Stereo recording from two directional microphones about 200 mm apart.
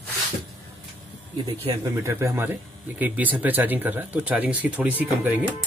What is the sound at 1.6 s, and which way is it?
Speech, 15° right (ahead or behind).